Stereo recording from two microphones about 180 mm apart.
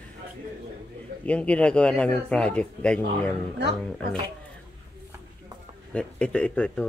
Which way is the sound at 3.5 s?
70° right (ahead or behind).